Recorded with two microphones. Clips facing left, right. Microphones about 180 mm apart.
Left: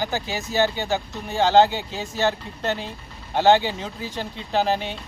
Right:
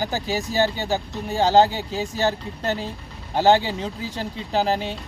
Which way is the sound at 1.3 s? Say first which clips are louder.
Even; 35° right (ahead or behind).